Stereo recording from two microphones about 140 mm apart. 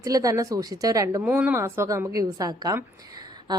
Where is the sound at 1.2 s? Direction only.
10° right (ahead or behind).